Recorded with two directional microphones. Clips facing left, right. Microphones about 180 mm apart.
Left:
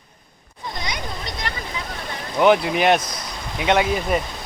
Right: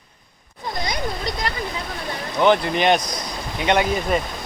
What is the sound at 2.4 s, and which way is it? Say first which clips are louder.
Speech: left 1 dB; 5° left (ahead or behind).